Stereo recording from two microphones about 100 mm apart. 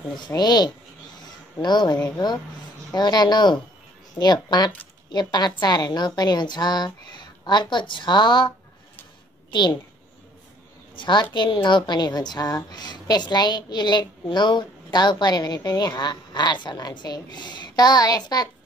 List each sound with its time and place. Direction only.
0.3 s a woman's voice: 45° left (ahead or behind)
11.0 s a woman's voice: 50° left (ahead or behind)